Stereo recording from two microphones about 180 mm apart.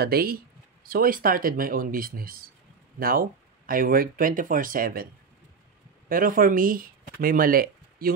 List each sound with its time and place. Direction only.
0.0 s speech: 55° right (ahead or behind)
6.0 s speech: 50° right (ahead or behind)